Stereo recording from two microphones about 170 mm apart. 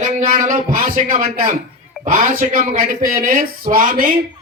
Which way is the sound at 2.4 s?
55° right (ahead or behind).